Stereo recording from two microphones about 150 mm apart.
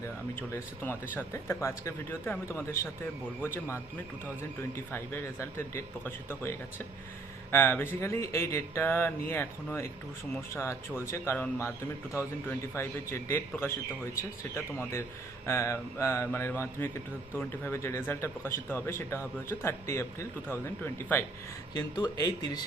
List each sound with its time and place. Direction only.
0.0 s speech: 15° left (ahead or behind)
4.9 s speech: 15° left (ahead or behind)
10.5 s speech: 20° left (ahead or behind)
21.8 s speech: 30° left (ahead or behind)